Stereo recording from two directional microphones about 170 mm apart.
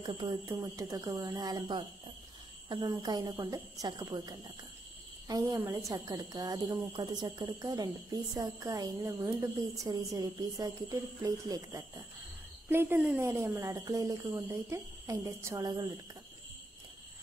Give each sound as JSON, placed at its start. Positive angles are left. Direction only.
{"t": 0.0, "sound": "a woman's voice", "side_deg": -25}